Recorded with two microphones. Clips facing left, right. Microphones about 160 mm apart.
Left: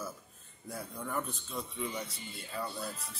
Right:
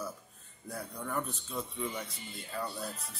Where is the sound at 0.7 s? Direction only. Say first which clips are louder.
Right 1 dB; centre (ahead or behind).